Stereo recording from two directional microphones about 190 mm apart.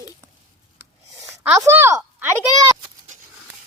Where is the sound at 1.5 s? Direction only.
15° right (ahead or behind).